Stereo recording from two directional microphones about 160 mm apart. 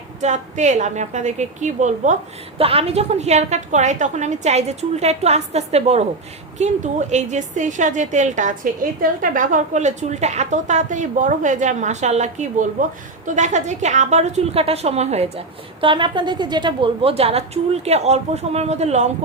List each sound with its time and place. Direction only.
0.2 s a woman's voice: 45° right (ahead or behind)
2.6 s a woman's voice: 35° right (ahead or behind)
15.8 s a woman's voice: 30° right (ahead or behind)